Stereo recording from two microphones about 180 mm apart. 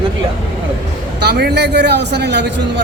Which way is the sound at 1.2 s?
65° right (ahead or behind).